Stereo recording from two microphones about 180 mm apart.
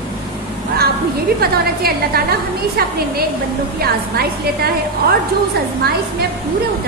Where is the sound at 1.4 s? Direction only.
60° right (ahead or behind).